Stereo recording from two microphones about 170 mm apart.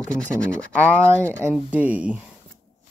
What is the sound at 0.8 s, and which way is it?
Speech, 15° right (ahead or behind).